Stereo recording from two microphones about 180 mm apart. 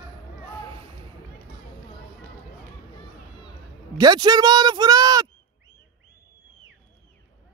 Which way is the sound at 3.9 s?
25° right (ahead or behind).